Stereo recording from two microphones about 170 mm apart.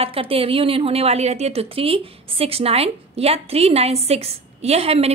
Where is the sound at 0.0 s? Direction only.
35° right (ahead or behind).